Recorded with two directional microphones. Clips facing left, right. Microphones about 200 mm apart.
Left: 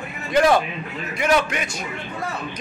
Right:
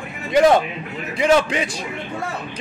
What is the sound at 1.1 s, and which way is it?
Speech, 30° right (ahead or behind).